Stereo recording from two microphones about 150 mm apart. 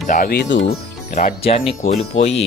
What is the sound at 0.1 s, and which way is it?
Speech, 80° left.